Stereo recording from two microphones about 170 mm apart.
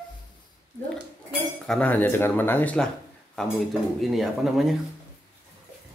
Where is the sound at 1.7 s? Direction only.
10° left (ahead or behind).